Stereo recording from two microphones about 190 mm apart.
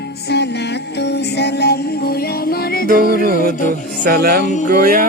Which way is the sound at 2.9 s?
50° right (ahead or behind).